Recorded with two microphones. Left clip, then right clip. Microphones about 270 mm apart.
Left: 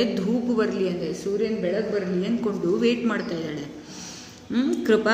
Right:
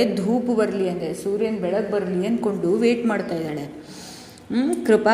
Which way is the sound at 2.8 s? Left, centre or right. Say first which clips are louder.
Right 3 dB; centre.